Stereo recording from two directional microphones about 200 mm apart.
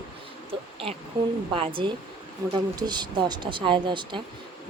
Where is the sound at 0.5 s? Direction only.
25° right (ahead or behind).